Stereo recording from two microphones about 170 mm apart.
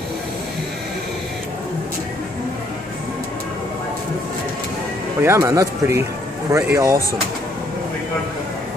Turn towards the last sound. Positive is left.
turn(degrees=-15)  # may be behind; listen again after turning